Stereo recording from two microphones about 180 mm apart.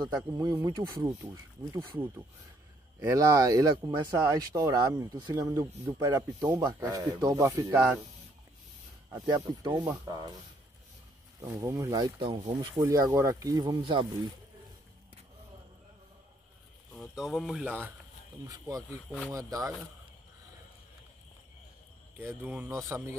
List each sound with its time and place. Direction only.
0.0 s speech: 20° right (ahead or behind)
9.1 s speech: 25° right (ahead or behind)
11.4 s speech: 20° right (ahead or behind)
16.9 s speech: centre (ahead or behind)
18.8 s speech: 5° left (ahead or behind)
19.3 s speech: 20° right (ahead or behind)
22.2 s speech: 10° right (ahead or behind)